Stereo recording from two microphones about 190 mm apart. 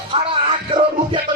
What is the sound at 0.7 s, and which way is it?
Speech, 25° right (ahead or behind).